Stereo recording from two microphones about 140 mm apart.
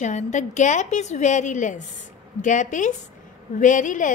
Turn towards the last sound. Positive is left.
turn(degrees=65)  # may be behind; listen again after turning